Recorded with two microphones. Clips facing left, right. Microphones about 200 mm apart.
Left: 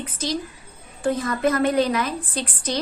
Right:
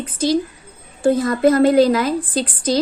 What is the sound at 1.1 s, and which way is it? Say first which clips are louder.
A woman's voice: right 7 dB; 30° right (ahead or behind).